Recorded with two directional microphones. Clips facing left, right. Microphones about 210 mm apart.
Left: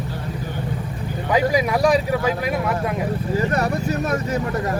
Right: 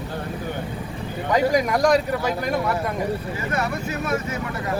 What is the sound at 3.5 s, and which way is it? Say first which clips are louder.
Speech: left 4 dB; 40° left (ahead or behind).